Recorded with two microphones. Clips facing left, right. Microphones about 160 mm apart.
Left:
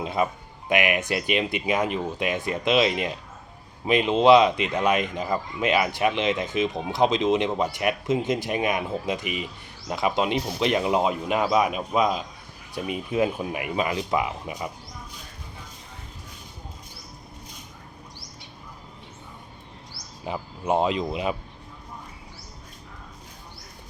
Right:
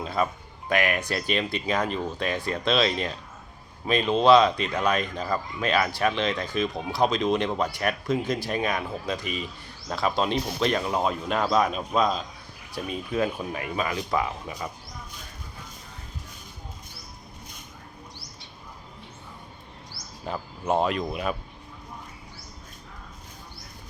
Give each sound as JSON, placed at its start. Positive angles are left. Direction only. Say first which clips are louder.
{"t": 0.0, "sound": "speech", "louder": "left 1 dB", "side_deg": 20}
{"t": 20.2, "sound": "speech", "louder": "left 1 dB", "side_deg": 15}